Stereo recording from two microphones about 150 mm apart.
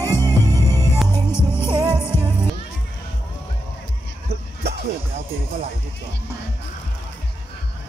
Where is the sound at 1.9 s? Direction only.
5° right (ahead or behind).